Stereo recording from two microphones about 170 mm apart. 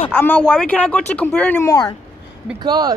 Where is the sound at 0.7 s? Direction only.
10° left (ahead or behind).